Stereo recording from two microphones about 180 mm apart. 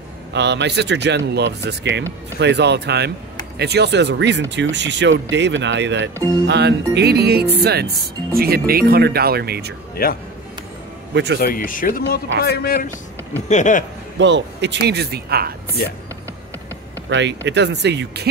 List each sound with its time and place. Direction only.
0.3 s speech: 75° right (ahead or behind)
6.4 s speech: 70° right (ahead or behind)
10.0 s a man's voice: 55° left (ahead or behind)
11.4 s a man's voice: 50° left (ahead or behind)
13.5 s speech: 45° left (ahead or behind)
14.1 s speech: 85° right; by 15.5 s 60° right (ahead or behind)
17.1 s speech: 80° right